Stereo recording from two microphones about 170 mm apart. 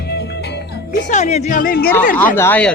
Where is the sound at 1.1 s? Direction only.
45° left (ahead or behind); by 1.9 s 60° left (ahead or behind).